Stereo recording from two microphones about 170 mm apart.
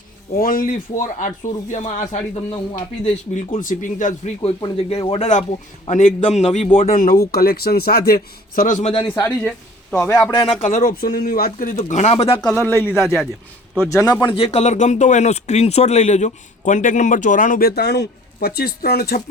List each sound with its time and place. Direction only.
0.3 s speech: 55° left (ahead or behind)
2.3 s speech: 25° left (ahead or behind)
3.0 s a man's voice: 35° left (ahead or behind)
3.6 s speech: 50° left (ahead or behind)
4.4 s a man's voice: 35° left (ahead or behind)
6.8 s a man's voice: 55° left (ahead or behind)
8.9 s a man's voice: 30° left (ahead or behind)
9.2 s a man's voice: 10° left (ahead or behind)
10.3 s a man's voice: 30° left (ahead or behind)
10.6 s speech: 50° left (ahead or behind)
12.5 s a man's voice: 15° left (ahead or behind)
13.9 s speech: 25° left (ahead or behind); by 19.2 s 65° left (ahead or behind)